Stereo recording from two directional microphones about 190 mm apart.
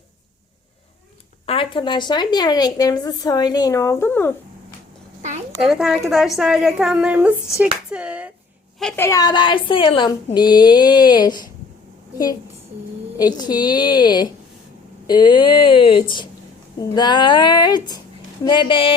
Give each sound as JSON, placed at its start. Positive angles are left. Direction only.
{"t": 1.5, "sound": "a woman's voice", "side_deg": 25}
{"t": 5.5, "sound": "a woman's voice", "side_deg": 0}
{"t": 8.8, "sound": "a woman's voice", "side_deg": 5}
{"t": 9.0, "sound": "a woman's voice", "side_deg": 20}
{"t": 13.1, "sound": "a woman's voice", "side_deg": 20}